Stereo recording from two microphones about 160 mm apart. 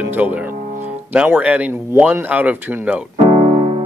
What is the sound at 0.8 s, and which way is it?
Speech, 10° right (ahead or behind).